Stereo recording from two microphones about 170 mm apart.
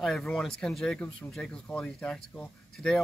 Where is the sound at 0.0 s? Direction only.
Centre (ahead or behind).